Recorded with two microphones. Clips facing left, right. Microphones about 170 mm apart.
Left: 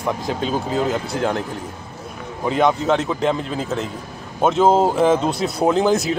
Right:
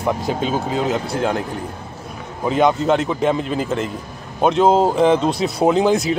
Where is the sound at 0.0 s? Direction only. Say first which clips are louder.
Right 2 dB; 5° right (ahead or behind).